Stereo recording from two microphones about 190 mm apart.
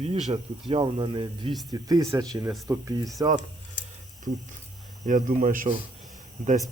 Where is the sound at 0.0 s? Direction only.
30° right (ahead or behind).